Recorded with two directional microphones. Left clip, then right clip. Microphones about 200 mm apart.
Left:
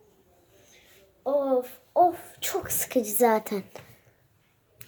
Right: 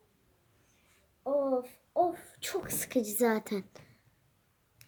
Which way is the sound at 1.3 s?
20° right (ahead or behind).